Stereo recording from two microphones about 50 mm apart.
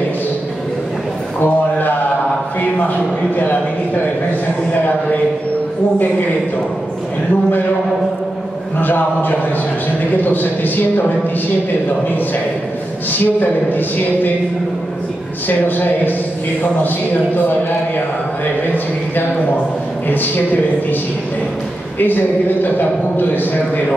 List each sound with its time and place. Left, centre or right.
1.4 s a sound: left
8.7 s a man's voice: left
13.1 s a man's voice: left
15.4 s a man's voice: left
21.9 s a man's voice: left